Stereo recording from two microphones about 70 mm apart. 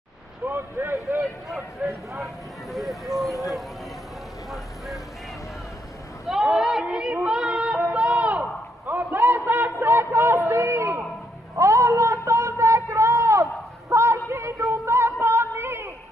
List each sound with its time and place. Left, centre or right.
0.5 s speech: right
1.8 s speech: right
2.1 s speech: centre
4.5 s vehicle: centre
6.4 s a sound: centre
7.2 s female singing: centre
7.8 s a sound: right
9.8 s a man's voice: right
11.5 s a sound: right